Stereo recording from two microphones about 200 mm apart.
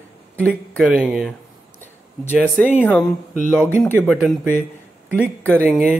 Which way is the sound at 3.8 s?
5° left (ahead or behind).